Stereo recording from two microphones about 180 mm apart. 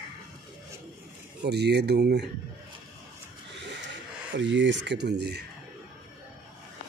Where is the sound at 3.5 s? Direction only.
80° right.